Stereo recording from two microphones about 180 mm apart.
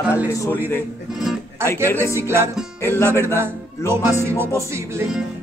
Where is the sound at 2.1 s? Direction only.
15° right (ahead or behind).